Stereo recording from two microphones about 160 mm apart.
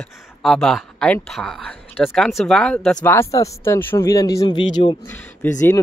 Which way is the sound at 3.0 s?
15° left (ahead or behind).